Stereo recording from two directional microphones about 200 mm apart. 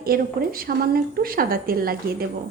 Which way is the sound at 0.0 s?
50° right (ahead or behind).